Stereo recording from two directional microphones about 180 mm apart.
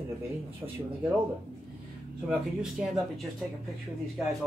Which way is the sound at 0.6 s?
15° right (ahead or behind).